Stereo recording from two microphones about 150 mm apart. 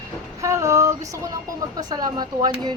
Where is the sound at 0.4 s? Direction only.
20° right (ahead or behind).